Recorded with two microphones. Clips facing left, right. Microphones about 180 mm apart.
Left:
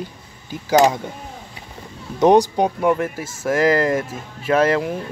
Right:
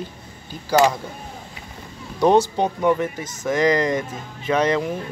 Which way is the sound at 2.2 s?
15° left (ahead or behind).